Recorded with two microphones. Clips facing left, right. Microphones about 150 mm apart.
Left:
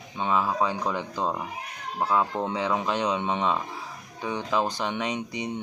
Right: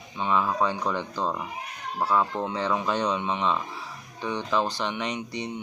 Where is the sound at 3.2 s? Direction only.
20° left (ahead or behind).